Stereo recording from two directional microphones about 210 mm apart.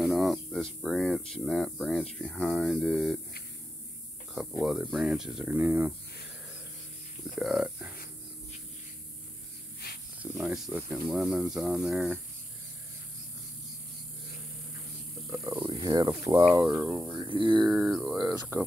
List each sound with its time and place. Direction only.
0.0 s speech: centre (ahead or behind)
4.3 s speech: 5° right (ahead or behind)
7.3 s speech: centre (ahead or behind)
10.3 s speech: centre (ahead or behind)
15.3 s speech: 15° right (ahead or behind)
16.7 s speech: 5° right (ahead or behind)
17.2 s speech: 25° right (ahead or behind)
17.6 s speech: centre (ahead or behind)